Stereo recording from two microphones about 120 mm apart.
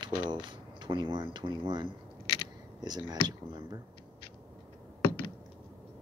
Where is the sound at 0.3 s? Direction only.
40° right (ahead or behind).